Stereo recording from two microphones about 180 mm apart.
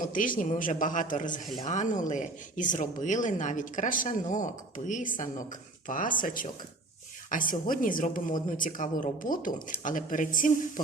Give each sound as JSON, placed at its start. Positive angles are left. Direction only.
{"t": 0.0, "sound": "speech", "side_deg": 50}